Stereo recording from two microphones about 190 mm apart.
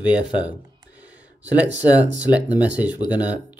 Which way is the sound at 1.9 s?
10° right (ahead or behind).